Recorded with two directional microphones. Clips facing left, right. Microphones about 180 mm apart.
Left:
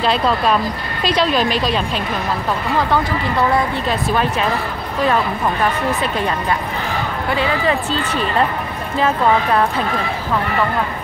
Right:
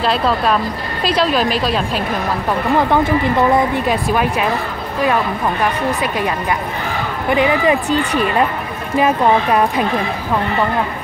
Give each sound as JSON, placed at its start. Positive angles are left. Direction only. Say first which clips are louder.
{"t": 0.0, "sound": "a woman's voice", "louder": "even", "side_deg": 0}
{"t": 2.9, "sound": "speech", "louder": "right 4 dB", "side_deg": -20}
{"t": 7.2, "sound": "speech", "louder": "right 5 dB", "side_deg": -15}